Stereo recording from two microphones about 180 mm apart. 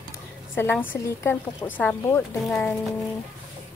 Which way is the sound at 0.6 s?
10° left (ahead or behind).